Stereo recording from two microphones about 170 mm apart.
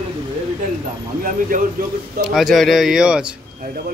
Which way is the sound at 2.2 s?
Centre (ahead or behind).